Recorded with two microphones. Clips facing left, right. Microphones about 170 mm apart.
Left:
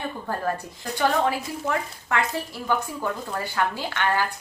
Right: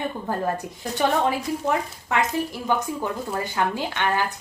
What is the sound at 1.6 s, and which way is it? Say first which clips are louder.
A woman's voice: right 3 dB; 20° right (ahead or behind).